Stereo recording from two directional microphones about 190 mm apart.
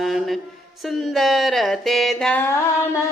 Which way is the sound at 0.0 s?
Centre (ahead or behind).